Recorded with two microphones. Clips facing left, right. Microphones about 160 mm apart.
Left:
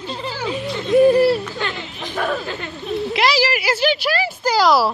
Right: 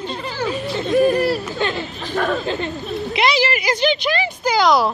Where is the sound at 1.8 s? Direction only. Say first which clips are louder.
Right 3 dB; 15° left (ahead or behind).